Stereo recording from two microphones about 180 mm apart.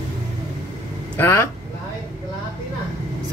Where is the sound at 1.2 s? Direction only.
15° left (ahead or behind).